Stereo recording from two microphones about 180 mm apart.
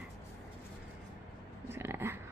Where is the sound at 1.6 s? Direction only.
15° right (ahead or behind).